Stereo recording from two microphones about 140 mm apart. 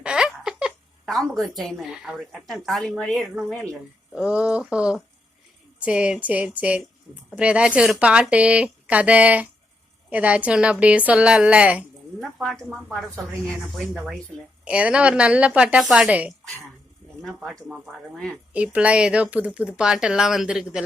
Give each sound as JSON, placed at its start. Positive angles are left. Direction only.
{"t": 0.0, "sound": "speech", "side_deg": -5}
{"t": 4.2, "sound": "speech", "side_deg": -10}
{"t": 13.9, "sound": "speech", "side_deg": -5}
{"t": 17.7, "sound": "speech", "side_deg": 0}